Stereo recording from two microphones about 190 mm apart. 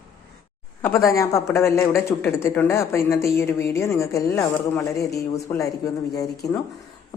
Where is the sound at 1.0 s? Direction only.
15° left (ahead or behind).